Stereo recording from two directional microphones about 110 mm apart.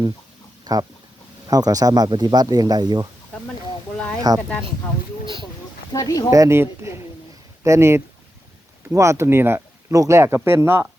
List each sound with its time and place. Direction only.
0.6 s a sound: 35° right (ahead or behind)
1.5 s speech: 35° right (ahead or behind)
4.3 s speech: 35° right (ahead or behind)
5.9 s speech: 35° left (ahead or behind)
6.3 s speech: 25° right (ahead or behind)